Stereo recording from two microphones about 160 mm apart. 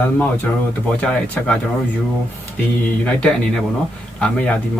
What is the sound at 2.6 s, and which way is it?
A man's voice, 10° left (ahead or behind).